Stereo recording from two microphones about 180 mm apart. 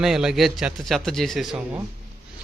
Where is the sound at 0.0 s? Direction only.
5° right (ahead or behind).